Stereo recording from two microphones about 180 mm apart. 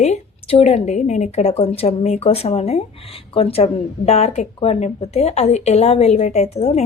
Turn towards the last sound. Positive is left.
turn(degrees=35)  # may be behind; listen again after turning